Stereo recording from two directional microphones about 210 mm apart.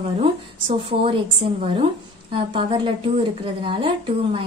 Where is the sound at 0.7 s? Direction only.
25° right (ahead or behind).